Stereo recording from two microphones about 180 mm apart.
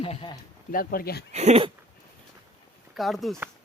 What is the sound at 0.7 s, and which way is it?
Speech, 55° left (ahead or behind).